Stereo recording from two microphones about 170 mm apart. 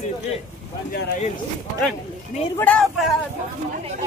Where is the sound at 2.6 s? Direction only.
5° left (ahead or behind).